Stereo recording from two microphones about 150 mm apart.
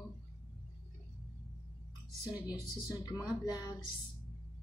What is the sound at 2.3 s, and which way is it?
Speech, 10° right (ahead or behind).